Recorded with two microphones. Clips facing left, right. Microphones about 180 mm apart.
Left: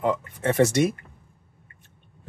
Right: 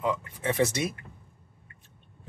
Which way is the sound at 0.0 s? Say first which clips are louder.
Left 5 dB; 55° left (ahead or behind).